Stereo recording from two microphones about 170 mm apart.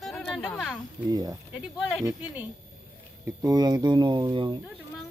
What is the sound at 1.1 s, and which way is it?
Speech, 20° right (ahead or behind).